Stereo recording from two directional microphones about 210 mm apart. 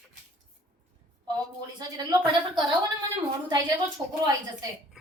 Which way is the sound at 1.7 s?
20° right (ahead or behind).